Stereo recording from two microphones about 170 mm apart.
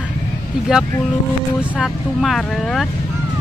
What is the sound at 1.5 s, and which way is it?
Speech, 5° right (ahead or behind).